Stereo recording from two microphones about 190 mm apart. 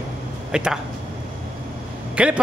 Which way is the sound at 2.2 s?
5° right (ahead or behind).